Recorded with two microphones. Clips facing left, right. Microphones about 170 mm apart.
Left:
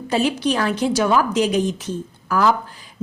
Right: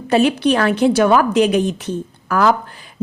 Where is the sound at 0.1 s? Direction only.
60° right (ahead or behind).